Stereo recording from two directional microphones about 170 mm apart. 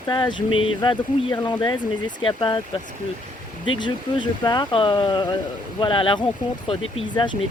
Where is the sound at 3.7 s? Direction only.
25° left (ahead or behind).